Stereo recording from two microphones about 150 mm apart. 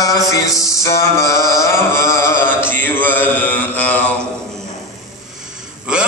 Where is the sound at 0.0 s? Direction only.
25° left (ahead or behind).